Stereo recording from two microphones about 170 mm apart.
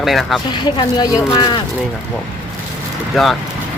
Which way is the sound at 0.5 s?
25° left (ahead or behind).